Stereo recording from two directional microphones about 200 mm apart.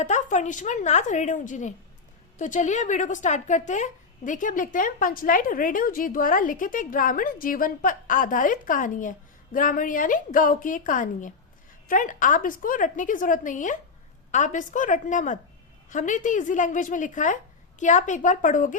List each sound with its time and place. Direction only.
0.0 s a woman's voice: 35° left (ahead or behind)